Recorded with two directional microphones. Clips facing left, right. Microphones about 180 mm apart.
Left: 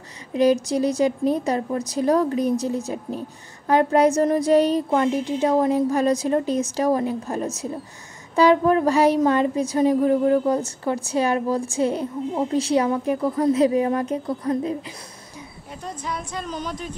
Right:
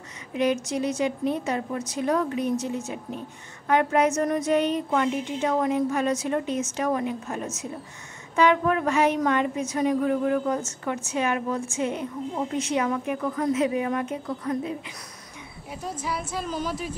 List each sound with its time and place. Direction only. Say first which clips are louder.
0.3 s speech: left 6 dB; 35° left (ahead or behind)
15.7 s a woman's voice: even; 5° right (ahead or behind)